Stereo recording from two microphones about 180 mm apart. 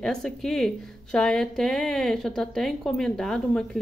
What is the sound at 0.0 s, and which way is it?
A woman's voice, centre (ahead or behind).